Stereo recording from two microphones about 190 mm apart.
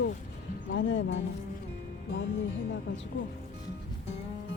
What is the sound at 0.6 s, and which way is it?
Speech, 75° left (ahead or behind).